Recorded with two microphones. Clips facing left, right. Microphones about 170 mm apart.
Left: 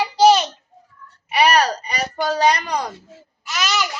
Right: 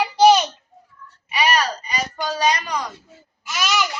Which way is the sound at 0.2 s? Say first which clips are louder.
Even; centre (ahead or behind).